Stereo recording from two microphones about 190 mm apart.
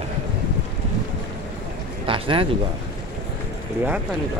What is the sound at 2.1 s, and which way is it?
Speech, 25° right (ahead or behind).